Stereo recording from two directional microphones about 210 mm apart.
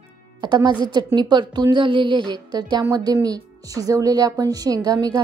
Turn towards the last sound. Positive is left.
turn(degrees=-20)  # may be behind; listen again after turning